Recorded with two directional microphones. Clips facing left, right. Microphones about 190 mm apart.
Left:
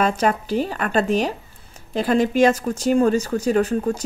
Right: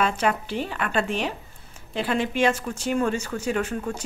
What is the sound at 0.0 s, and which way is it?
Speech, 40° left (ahead or behind).